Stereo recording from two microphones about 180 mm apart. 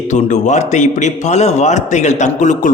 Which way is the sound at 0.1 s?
40° left (ahead or behind).